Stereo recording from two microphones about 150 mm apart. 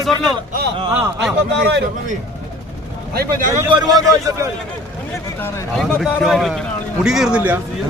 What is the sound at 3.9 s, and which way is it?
Speech, 20° right (ahead or behind).